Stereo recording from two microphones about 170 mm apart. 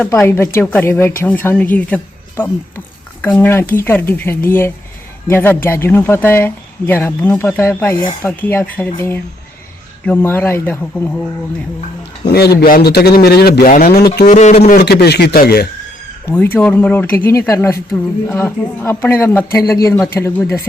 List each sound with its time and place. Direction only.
0.3 s a woman's voice: 15° left (ahead or behind)
12.2 s speech: 70° left (ahead or behind)
14.3 s speech: 45° left (ahead or behind)
14.8 s speech: 70° left (ahead or behind)
16.2 s speech: 10° left (ahead or behind)